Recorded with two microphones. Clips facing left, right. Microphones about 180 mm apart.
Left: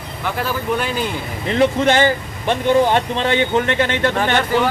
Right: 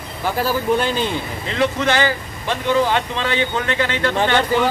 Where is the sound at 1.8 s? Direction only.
25° left (ahead or behind).